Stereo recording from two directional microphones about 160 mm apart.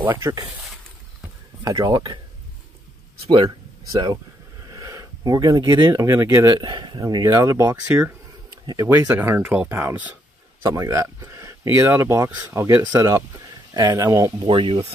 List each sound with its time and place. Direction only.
0.0 s speech: 15° right (ahead or behind)
1.6 s speech: 25° right (ahead or behind)
3.3 s speech: 30° right (ahead or behind)